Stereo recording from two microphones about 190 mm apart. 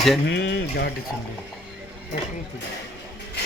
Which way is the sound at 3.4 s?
60° left (ahead or behind).